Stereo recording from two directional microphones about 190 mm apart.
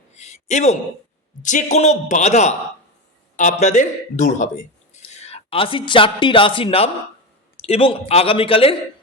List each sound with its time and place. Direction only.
0.1 s a sound: 35° left (ahead or behind)
1.4 s a man's voice: 40° left (ahead or behind)
3.6 s a man's voice: 40° left (ahead or behind)